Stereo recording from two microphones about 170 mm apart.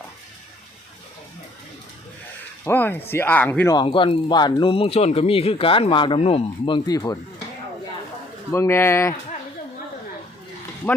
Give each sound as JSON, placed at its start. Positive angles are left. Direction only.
{"t": 2.6, "sound": "speech", "side_deg": 10}
{"t": 3.8, "sound": "speech", "side_deg": 35}
{"t": 8.5, "sound": "speech", "side_deg": 15}
{"t": 10.8, "sound": "speech", "side_deg": 10}